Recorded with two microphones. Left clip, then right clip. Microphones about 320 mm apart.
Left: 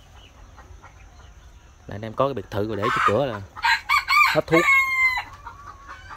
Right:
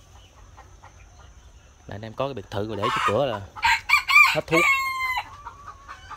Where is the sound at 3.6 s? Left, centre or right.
Right.